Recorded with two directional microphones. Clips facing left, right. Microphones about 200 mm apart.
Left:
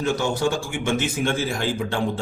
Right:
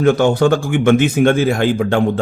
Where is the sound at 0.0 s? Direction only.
60° right (ahead or behind).